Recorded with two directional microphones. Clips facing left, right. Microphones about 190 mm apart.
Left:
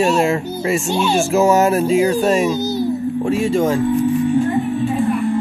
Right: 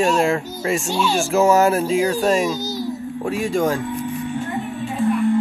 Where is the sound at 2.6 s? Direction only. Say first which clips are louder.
Left 6 dB; 60° left (ahead or behind).